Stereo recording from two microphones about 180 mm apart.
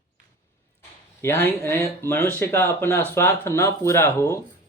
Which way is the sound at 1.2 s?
15° left (ahead or behind).